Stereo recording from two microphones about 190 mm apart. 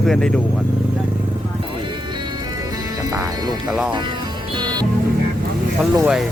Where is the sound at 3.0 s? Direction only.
20° right (ahead or behind).